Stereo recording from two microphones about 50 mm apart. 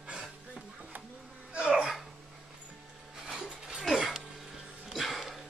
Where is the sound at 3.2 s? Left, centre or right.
Centre.